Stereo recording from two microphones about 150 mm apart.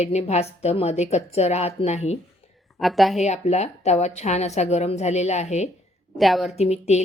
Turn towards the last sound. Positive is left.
turn(degrees=45)  # may be behind; listen again after turning